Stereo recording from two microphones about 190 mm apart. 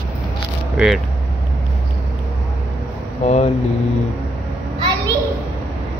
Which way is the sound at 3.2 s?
35° left (ahead or behind).